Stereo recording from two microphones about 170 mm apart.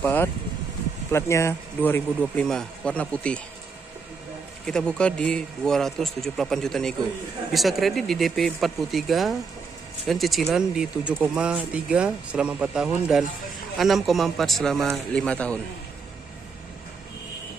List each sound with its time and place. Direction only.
0.0 s speech: 10° left (ahead or behind)
4.6 s speech: 5° left (ahead or behind)